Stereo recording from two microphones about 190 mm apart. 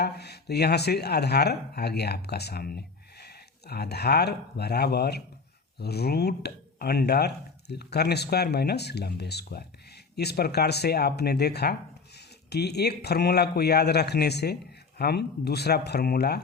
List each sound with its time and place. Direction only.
0.0 s speech: 60° left (ahead or behind)